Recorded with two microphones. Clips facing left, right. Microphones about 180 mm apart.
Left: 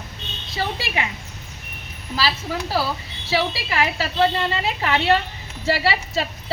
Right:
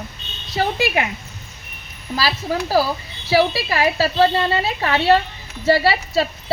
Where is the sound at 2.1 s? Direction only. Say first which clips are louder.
Right 3 dB; 40° right (ahead or behind).